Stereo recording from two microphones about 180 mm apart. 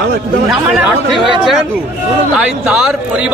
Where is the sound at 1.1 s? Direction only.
Centre (ahead or behind).